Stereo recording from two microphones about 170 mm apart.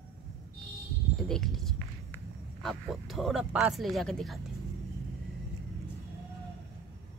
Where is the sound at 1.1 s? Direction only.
5° left (ahead or behind).